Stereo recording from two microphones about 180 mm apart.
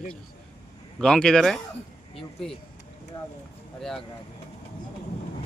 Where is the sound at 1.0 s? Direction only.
5° left (ahead or behind).